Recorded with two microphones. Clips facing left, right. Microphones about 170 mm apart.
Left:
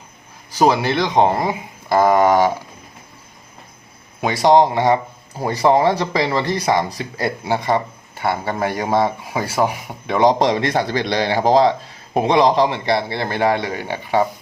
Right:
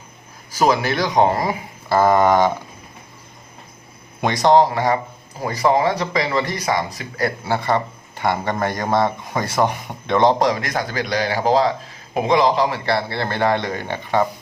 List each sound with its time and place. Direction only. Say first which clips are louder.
0.6 s speech: left 2 dB; 30° left (ahead or behind)
2.0 s a man's voice: left 1 dB; 10° left (ahead or behind)
4.2 s a man's voice: left 1 dB; 5° left (ahead or behind)
4.5 s a man's voice: left 3 dB; 20° left (ahead or behind)
10.4 s a man's voice: left 3 dB; 30° left (ahead or behind); by 14.3 s 10° left (ahead or behind)